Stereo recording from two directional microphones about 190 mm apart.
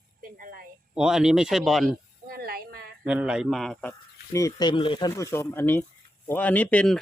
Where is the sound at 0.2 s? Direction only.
50° right (ahead or behind).